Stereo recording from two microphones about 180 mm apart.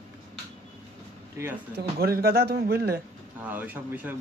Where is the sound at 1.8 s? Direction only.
60° right (ahead or behind).